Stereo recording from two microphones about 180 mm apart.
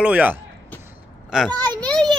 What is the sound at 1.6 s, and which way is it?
Children playing, 5° left (ahead or behind).